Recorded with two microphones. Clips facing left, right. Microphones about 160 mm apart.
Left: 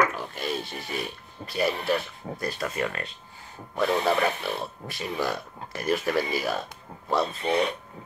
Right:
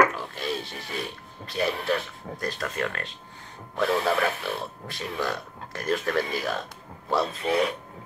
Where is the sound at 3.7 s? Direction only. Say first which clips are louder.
Even; centre (ahead or behind).